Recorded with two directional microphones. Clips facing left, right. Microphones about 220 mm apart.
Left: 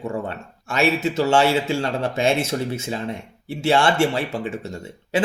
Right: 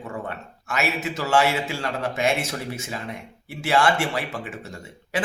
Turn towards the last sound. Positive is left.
turn(degrees=25)  # may be behind; listen again after turning